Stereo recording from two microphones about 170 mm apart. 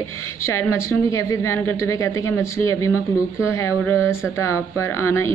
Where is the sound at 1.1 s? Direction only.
15° left (ahead or behind).